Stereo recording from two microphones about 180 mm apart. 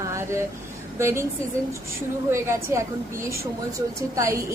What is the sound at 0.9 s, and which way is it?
Speech, 15° right (ahead or behind).